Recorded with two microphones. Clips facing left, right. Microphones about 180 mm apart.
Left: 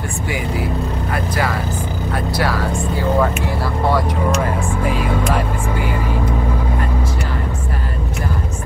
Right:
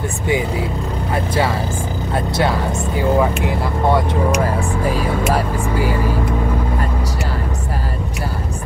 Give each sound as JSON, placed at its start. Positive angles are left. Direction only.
{"t": 1.1, "sound": "speech", "side_deg": -25}